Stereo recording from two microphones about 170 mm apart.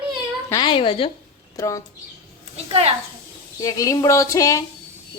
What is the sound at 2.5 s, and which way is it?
Speech, 35° right (ahead or behind).